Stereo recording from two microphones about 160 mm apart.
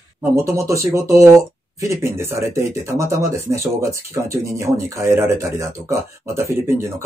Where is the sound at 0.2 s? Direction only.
15° right (ahead or behind).